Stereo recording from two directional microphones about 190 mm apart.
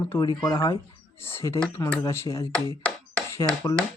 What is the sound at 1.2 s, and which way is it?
Speech, 15° left (ahead or behind).